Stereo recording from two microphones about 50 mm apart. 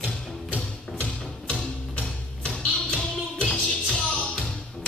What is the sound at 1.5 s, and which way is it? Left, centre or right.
Music, centre.